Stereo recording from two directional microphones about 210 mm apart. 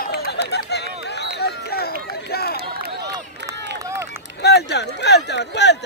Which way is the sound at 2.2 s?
50° left (ahead or behind).